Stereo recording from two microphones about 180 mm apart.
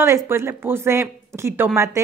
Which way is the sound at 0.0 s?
15° right (ahead or behind).